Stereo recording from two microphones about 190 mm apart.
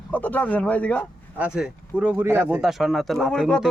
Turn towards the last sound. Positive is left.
turn(degrees=0)  # may be behind; listen again after turning